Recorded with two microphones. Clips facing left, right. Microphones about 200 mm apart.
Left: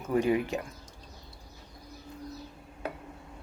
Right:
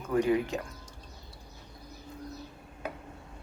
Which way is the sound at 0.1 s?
15° left (ahead or behind).